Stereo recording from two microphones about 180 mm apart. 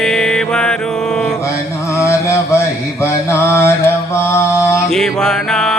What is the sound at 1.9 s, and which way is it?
Mantra, 15° left (ahead or behind).